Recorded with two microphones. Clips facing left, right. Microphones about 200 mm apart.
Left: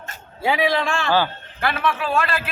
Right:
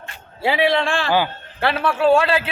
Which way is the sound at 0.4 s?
70° right (ahead or behind).